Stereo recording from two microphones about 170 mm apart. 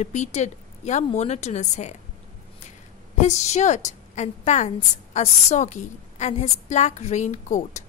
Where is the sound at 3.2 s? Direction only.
45° left (ahead or behind).